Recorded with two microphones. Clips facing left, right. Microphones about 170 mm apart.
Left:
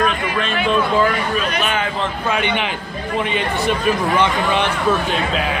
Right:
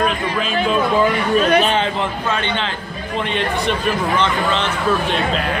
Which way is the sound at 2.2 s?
15° left (ahead or behind).